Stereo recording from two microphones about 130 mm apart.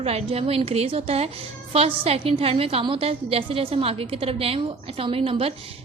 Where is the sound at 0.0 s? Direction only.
50° right (ahead or behind).